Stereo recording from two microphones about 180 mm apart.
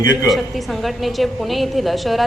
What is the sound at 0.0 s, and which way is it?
Speech, 20° left (ahead or behind).